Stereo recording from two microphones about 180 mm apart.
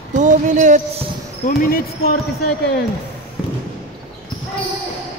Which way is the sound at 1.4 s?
50° left (ahead or behind).